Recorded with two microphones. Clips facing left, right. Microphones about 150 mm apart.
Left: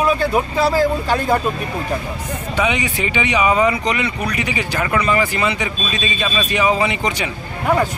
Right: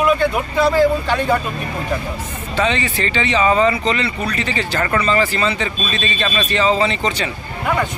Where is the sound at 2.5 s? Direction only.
10° left (ahead or behind).